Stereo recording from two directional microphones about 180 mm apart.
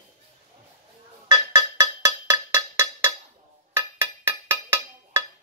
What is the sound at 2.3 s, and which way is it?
Cowbell, 20° right (ahead or behind).